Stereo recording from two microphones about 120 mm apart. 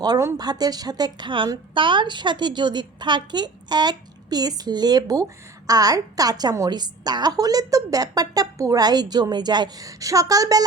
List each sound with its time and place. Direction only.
0.3 s a woman's voice: 35° right (ahead or behind)